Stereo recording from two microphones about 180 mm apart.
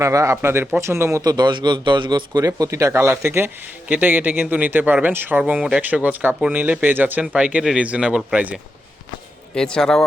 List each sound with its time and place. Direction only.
0.0 s speech: 15° right (ahead or behind)
9.6 s speech: 5° left (ahead or behind)